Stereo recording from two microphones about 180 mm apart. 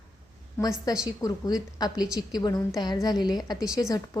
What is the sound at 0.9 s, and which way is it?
Speech, 20° left (ahead or behind).